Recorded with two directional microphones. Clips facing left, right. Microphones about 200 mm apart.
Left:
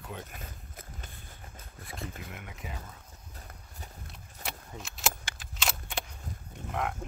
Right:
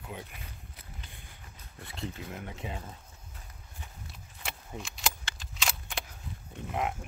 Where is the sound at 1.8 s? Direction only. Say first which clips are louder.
Right 2 dB; 30° right (ahead or behind).